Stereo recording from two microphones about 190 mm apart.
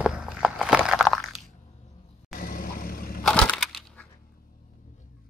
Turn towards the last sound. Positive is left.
turn(degrees=0)  # may be behind; listen again after turning